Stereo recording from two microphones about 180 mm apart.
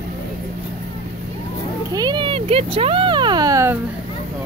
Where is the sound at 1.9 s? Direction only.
25° right (ahead or behind).